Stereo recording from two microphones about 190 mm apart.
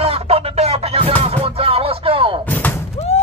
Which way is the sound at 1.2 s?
30° right (ahead or behind).